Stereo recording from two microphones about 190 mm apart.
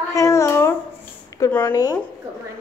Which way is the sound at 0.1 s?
15° left (ahead or behind).